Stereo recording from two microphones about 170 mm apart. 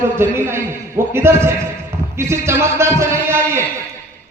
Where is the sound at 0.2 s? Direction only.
15° right (ahead or behind).